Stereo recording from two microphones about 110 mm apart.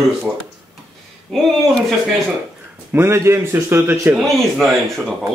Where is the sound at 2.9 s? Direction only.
20° right (ahead or behind).